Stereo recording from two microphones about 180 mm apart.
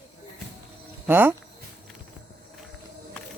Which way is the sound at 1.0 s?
10° right (ahead or behind).